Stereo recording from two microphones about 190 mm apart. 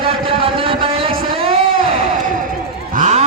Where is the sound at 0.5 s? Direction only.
30° right (ahead or behind).